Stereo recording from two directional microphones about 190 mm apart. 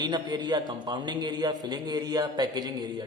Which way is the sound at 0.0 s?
25° right (ahead or behind).